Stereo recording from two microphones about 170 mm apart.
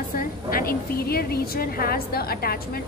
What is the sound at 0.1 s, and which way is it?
A woman's voice, 55° left (ahead or behind).